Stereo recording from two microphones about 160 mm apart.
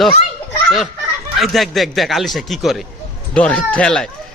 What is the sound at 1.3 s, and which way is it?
Speech, centre (ahead or behind).